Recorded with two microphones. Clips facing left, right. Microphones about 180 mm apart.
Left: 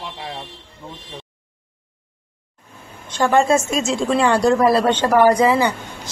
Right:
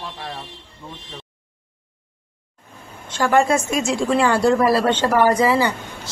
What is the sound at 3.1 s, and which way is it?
A woman's voice, 25° left (ahead or behind).